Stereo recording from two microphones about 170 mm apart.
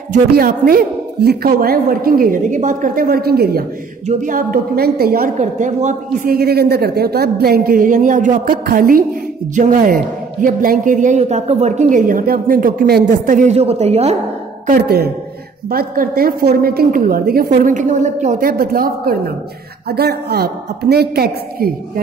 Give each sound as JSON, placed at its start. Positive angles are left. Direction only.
{"t": 0.1, "sound": "a woman's voice", "side_deg": -60}
{"t": 4.2, "sound": "a woman's voice", "side_deg": -55}
{"t": 5.4, "sound": "a man's voice", "side_deg": -45}
{"t": 6.3, "sound": "a woman's voice", "side_deg": -65}
{"t": 14.8, "sound": "a woman's voice", "side_deg": -70}